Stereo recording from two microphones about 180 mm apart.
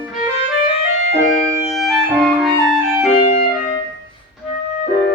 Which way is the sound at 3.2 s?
35° left (ahead or behind).